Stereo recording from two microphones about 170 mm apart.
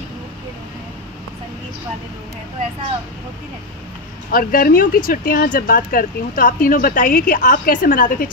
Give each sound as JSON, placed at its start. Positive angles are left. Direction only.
{"t": 4.3, "sound": "speech", "side_deg": 55}